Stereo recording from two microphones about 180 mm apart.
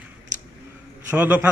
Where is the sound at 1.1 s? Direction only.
10° right (ahead or behind).